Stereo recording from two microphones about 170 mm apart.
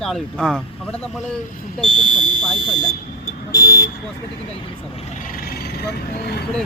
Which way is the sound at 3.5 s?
65° left (ahead or behind).